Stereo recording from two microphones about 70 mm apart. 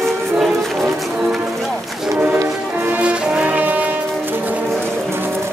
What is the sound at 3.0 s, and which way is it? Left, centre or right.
Music, centre.